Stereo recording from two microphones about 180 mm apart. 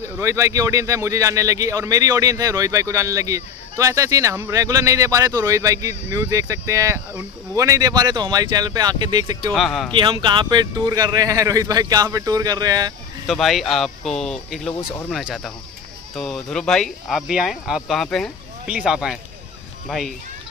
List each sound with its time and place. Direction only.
0.0 s speech: 15° right (ahead or behind)
9.5 s speech: centre (ahead or behind)
9.9 s speech: 25° right (ahead or behind)
13.3 s speech: centre (ahead or behind)